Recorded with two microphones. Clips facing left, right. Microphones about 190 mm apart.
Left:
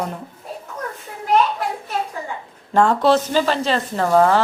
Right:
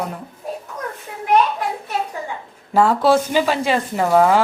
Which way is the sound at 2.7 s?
5° right (ahead or behind).